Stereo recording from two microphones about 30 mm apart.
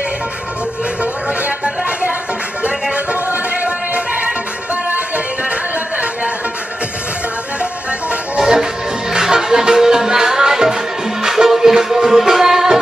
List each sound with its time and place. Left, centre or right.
9.1 s music: right